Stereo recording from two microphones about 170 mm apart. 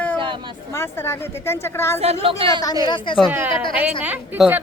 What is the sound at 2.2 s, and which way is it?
Speech, 30° right (ahead or behind).